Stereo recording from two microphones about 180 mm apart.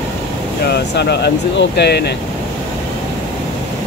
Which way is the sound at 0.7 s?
65° left (ahead or behind).